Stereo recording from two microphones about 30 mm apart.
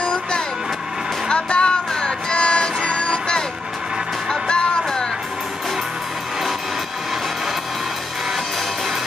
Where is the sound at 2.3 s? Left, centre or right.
Left.